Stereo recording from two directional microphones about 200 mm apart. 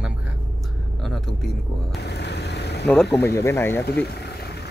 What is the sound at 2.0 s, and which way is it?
Speech, 55° left (ahead or behind).